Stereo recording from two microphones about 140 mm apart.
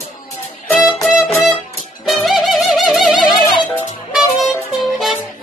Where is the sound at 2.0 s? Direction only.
Centre (ahead or behind).